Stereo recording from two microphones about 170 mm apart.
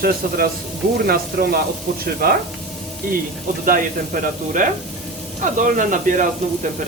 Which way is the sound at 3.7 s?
55° right (ahead or behind).